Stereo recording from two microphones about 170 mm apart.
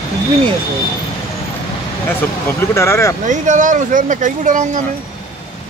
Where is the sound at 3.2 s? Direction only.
50° right (ahead or behind).